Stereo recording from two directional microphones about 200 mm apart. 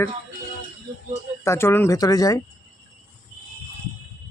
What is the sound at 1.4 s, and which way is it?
Speech, 15° left (ahead or behind).